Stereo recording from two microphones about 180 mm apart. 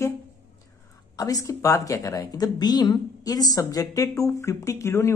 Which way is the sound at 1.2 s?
20° left (ahead or behind).